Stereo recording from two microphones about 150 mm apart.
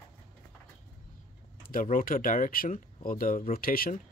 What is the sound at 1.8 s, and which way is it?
Speech, 65° left (ahead or behind).